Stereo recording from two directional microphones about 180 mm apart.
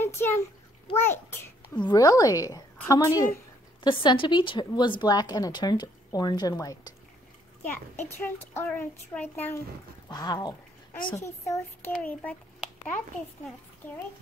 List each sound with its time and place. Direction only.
0.0 s a sound: 10° left (ahead or behind)
1.0 s a child's voice: 15° left (ahead or behind)
10.0 s a child's voice: 20° left (ahead or behind)